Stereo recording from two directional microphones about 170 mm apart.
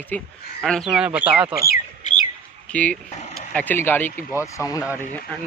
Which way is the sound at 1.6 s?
60° left (ahead or behind).